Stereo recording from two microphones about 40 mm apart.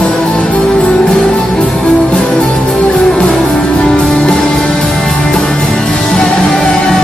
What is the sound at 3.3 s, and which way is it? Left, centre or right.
Music, left.